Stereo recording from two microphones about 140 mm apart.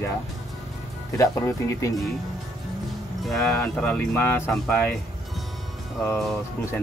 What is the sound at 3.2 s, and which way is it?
Speech, 5° left (ahead or behind).